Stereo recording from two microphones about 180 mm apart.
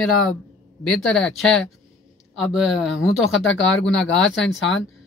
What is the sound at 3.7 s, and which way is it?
Speech, 90° left.